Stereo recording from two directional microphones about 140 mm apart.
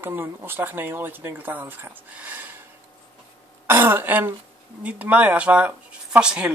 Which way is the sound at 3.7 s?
15° right (ahead or behind).